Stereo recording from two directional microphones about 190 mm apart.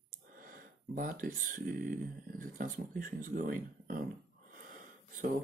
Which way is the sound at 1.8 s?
45° right (ahead or behind).